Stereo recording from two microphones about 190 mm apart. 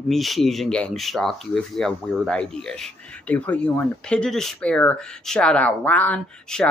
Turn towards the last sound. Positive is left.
turn(degrees=5)  # may be behind; listen again after turning